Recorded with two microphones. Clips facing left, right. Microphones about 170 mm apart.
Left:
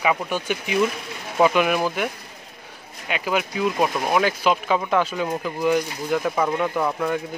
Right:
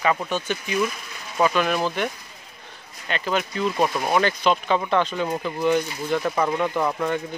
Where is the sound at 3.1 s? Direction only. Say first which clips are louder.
Left 1 dB; 10° left (ahead or behind).